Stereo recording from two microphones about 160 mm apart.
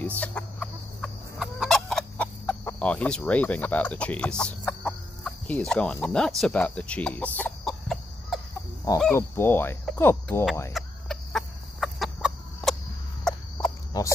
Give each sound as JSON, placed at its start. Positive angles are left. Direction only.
{"t": 0.0, "sound": "chicken", "side_deg": 10}
{"t": 9.1, "sound": "speech", "side_deg": 15}
{"t": 10.7, "sound": "chicken", "side_deg": 0}
{"t": 13.3, "sound": "a sound", "side_deg": 5}
{"t": 13.9, "sound": "speech", "side_deg": 20}